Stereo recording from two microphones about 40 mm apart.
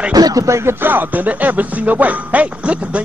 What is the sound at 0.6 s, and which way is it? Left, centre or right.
Speech, right.